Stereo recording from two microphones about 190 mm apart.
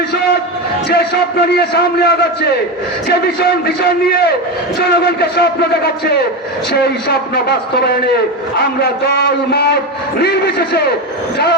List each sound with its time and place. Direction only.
0.9 s speech: 55° left (ahead or behind)
3.8 s speech: 55° left (ahead or behind)
8.8 s speech: 60° left (ahead or behind)